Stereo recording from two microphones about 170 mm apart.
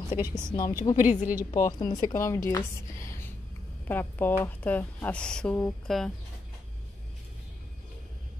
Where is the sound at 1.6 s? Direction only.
20° left (ahead or behind).